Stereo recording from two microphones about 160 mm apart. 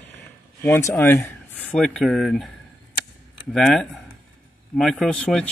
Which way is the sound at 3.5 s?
Centre (ahead or behind).